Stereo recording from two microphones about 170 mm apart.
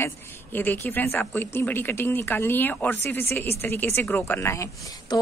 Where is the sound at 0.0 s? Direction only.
10° left (ahead or behind).